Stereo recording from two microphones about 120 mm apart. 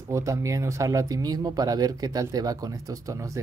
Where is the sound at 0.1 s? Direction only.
25° right (ahead or behind).